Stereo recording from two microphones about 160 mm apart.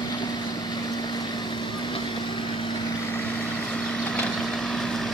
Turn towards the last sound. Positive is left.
turn(degrees=0)  # may be behind; listen again after turning